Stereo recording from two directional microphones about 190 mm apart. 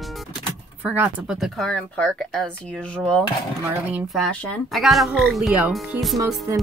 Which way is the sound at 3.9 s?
Centre (ahead or behind).